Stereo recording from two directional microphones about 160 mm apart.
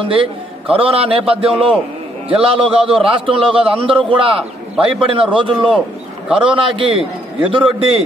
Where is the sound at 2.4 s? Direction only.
35° right (ahead or behind).